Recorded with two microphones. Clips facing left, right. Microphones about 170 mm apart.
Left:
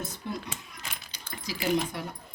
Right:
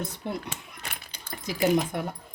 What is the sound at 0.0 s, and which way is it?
Speech, 60° right (ahead or behind).